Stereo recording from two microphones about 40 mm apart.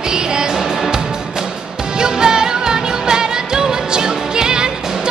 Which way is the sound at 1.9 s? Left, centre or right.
Centre.